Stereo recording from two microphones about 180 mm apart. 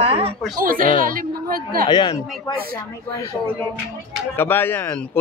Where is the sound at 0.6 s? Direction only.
50° right (ahead or behind).